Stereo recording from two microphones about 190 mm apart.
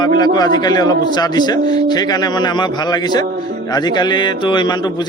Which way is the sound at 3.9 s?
25° left (ahead or behind).